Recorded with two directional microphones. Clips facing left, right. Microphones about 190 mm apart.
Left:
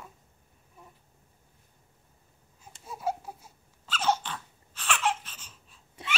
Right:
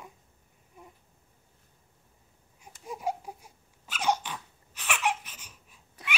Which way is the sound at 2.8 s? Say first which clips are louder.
Even; 15° right (ahead or behind).